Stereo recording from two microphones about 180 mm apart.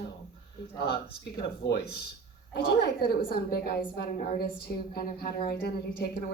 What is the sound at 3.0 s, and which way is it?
A woman's voice, 55° left (ahead or behind).